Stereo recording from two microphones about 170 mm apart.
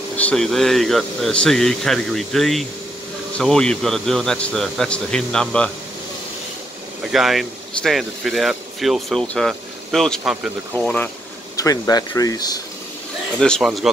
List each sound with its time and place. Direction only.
0.2 s speech: 5° left (ahead or behind)
7.1 s speech: centre (ahead or behind)
11.5 s speech: 20° left (ahead or behind)
13.4 s speech: centre (ahead or behind)